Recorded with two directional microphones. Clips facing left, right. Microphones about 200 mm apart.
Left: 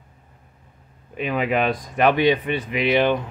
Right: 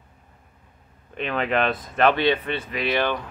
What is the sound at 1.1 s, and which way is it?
Speech, 10° left (ahead or behind).